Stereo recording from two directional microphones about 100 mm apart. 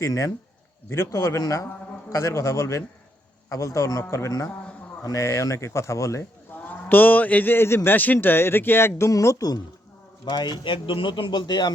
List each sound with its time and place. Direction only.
0.0 s speech: 35° left (ahead or behind)
6.5 s speech: 15° left (ahead or behind); by 9.6 s 35° left (ahead or behind)
10.2 s speech: 45° left (ahead or behind)